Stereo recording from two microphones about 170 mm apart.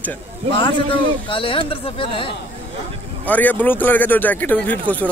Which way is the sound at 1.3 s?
30° left (ahead or behind).